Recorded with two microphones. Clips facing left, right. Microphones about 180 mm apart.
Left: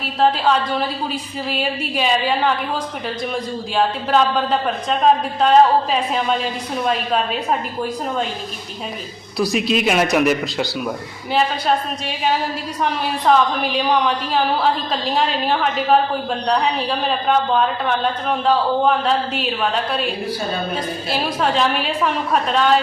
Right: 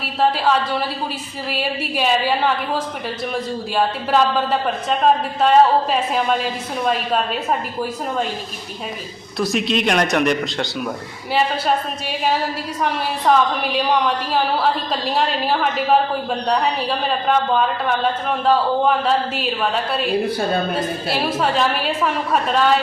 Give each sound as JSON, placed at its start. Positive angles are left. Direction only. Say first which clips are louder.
{"t": 0.2, "sound": "speech", "louder": "left 1 dB", "side_deg": 0}
{"t": 3.8, "sound": "speech", "louder": "left 1 dB", "side_deg": 0}
{"t": 9.4, "sound": "speech", "louder": "left 1 dB", "side_deg": 0}
{"t": 13.3, "sound": "speech", "louder": "left 1 dB", "side_deg": 0}
{"t": 17.1, "sound": "speech", "louder": "even", "side_deg": 0}